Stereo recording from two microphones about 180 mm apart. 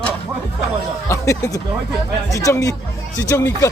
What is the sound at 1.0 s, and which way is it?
Speech, 15° left (ahead or behind).